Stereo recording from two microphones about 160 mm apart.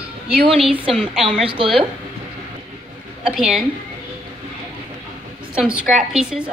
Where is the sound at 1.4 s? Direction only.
35° right (ahead or behind).